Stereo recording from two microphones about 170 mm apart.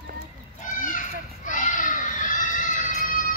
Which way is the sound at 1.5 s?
50° left (ahead or behind).